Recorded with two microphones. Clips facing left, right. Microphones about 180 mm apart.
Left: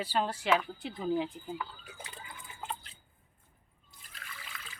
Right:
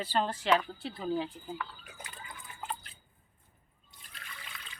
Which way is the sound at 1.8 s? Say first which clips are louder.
Left 1 dB; 25° left (ahead or behind).